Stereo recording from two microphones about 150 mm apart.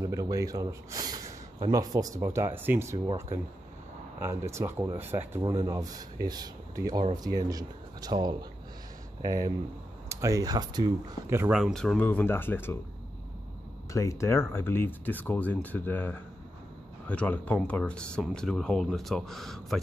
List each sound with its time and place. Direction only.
0.0 s speech: 20° right (ahead or behind)
4.2 s speech: 20° right (ahead or behind)
5.4 s speech: 25° right (ahead or behind)
11.5 s speech: centre (ahead or behind)
13.9 s speech: 20° left (ahead or behind); by 19.8 s centre (ahead or behind)